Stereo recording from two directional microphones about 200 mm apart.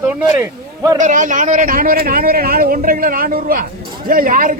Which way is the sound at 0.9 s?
40° right (ahead or behind).